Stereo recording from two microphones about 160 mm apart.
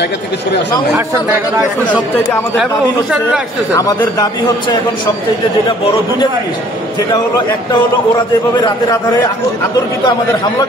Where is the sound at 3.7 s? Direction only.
20° left (ahead or behind).